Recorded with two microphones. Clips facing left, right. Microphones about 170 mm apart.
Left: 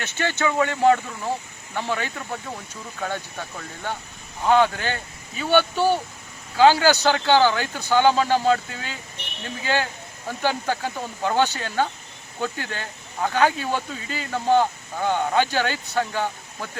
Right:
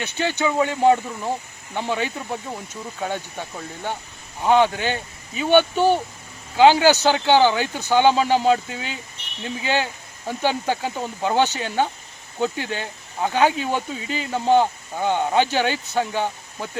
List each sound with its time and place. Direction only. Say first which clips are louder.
0.0 s speech: right 2 dB; 15° right (ahead or behind)
4.4 s speech: right 1 dB; 15° right (ahead or behind)